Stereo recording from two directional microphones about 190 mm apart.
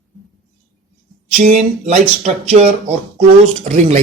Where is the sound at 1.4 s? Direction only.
35° right (ahead or behind).